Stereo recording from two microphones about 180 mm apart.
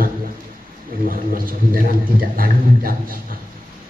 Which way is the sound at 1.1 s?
50° right (ahead or behind).